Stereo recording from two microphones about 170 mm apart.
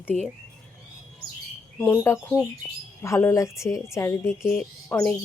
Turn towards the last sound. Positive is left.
turn(degrees=10)  # may be behind; listen again after turning